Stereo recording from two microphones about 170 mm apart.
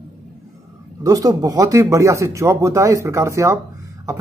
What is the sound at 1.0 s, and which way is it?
Speech, 20° right (ahead or behind).